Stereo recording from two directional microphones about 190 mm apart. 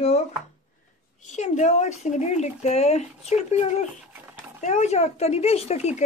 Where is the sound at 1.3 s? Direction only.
40° left (ahead or behind).